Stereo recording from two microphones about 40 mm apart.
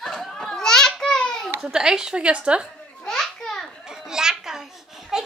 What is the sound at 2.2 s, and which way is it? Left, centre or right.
Speech, right.